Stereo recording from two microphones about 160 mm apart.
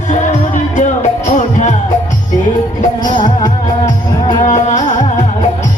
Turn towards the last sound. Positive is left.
turn(degrees=50)  # may be behind; listen again after turning